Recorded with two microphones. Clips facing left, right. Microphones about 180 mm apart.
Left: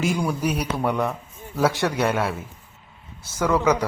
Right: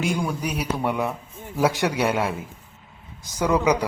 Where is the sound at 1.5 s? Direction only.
15° right (ahead or behind).